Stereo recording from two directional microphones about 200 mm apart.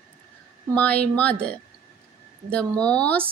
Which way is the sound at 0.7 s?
5° left (ahead or behind).